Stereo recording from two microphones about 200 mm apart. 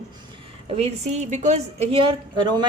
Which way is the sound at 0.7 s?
35° right (ahead or behind).